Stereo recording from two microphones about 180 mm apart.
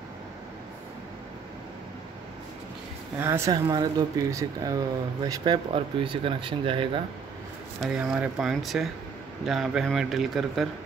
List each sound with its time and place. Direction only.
3.2 s speech: 15° right (ahead or behind)
7.8 s speech: 5° right (ahead or behind)